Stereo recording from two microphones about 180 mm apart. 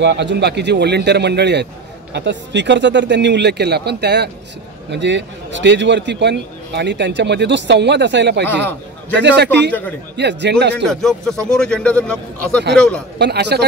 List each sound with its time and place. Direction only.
0.0 s a man's voice: 75° right (ahead or behind)
4.9 s a man's voice: 80° right
10.9 s a man's voice: centre (ahead or behind)
13.2 s a man's voice: 70° right (ahead or behind)